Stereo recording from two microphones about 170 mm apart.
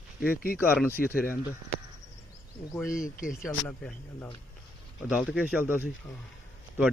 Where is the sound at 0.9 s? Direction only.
60° left (ahead or behind).